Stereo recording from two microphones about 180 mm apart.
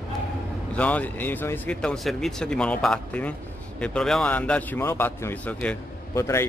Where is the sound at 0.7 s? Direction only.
5° left (ahead or behind).